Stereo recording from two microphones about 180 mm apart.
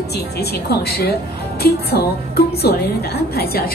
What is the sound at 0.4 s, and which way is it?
A woman's voice, 60° left (ahead or behind).